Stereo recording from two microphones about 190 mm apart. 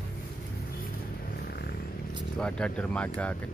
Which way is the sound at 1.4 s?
55° left (ahead or behind).